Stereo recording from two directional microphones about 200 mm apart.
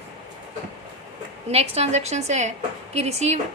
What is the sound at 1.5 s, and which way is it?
A woman's voice, 30° right (ahead or behind).